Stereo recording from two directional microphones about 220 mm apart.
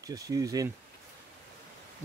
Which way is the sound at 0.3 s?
15° right (ahead or behind).